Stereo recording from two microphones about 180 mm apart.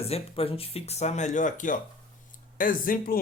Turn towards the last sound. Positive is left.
turn(degrees=50)  # may be behind; listen again after turning